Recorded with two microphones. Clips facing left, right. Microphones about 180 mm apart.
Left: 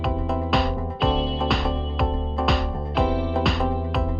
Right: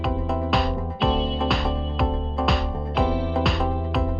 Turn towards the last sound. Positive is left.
turn(degrees=0)  # may be behind; listen again after turning